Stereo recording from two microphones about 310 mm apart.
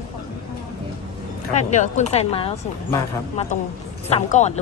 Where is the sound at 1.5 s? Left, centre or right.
Left.